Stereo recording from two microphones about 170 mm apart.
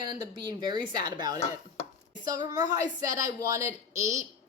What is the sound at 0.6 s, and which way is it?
Speech, 25° right (ahead or behind).